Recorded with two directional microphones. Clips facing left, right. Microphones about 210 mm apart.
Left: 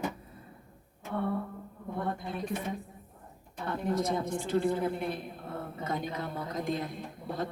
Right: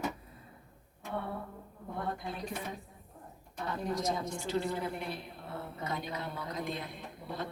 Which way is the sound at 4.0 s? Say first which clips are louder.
Left 4 dB; 55° left (ahead or behind).